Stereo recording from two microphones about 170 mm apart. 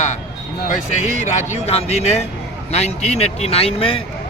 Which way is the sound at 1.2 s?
40° left (ahead or behind).